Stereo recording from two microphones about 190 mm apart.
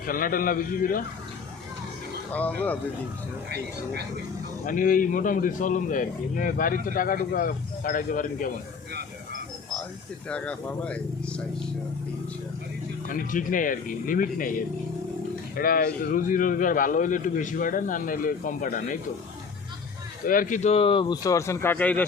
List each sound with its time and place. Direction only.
0.0 s a man's voice: 45° left (ahead or behind)
2.3 s speech: 10° left (ahead or behind)
4.6 s a man's voice: 45° left (ahead or behind)
10.2 s speech: 5° left (ahead or behind)
13.1 s a man's voice: 45° left (ahead or behind)
20.2 s speech: 45° left (ahead or behind); by 22.0 s 10° left (ahead or behind)